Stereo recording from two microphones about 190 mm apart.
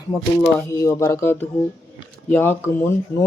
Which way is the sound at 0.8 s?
15° left (ahead or behind).